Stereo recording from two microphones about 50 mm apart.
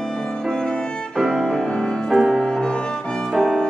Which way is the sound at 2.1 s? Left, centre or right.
Centre.